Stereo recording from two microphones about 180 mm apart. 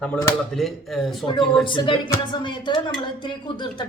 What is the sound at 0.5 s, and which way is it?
A man's voice, centre (ahead or behind).